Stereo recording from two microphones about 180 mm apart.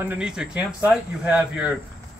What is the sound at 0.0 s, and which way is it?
Speech, 10° right (ahead or behind).